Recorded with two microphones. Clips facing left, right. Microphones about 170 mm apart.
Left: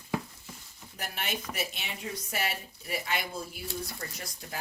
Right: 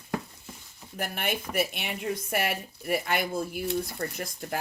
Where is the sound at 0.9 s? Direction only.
55° right (ahead or behind).